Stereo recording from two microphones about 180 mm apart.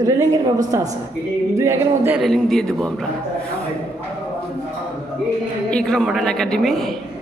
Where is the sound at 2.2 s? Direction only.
Centre (ahead or behind).